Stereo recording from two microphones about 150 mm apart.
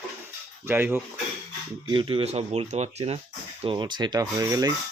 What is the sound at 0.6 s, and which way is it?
Speech, 15° right (ahead or behind).